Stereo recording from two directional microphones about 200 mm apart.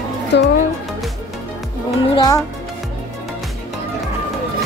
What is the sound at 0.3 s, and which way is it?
Speech, 60° left (ahead or behind).